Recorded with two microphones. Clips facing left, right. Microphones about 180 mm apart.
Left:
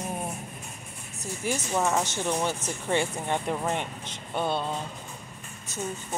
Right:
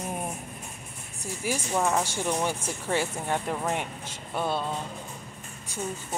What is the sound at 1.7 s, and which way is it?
Speech, 5° left (ahead or behind).